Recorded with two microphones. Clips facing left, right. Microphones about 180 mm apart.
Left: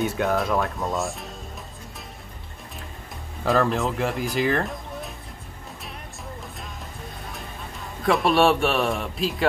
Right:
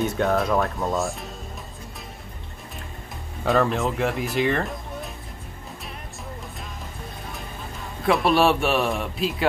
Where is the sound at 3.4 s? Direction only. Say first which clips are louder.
Even; centre (ahead or behind).